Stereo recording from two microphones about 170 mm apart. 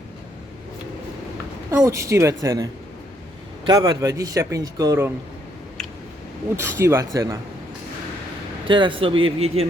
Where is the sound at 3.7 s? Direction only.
20° right (ahead or behind).